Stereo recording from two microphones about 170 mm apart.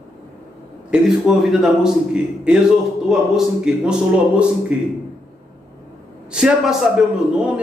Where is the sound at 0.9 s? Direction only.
5° right (ahead or behind).